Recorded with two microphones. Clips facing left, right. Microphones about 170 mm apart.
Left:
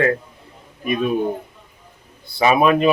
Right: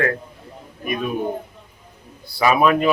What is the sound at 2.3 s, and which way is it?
Speech, 20° left (ahead or behind).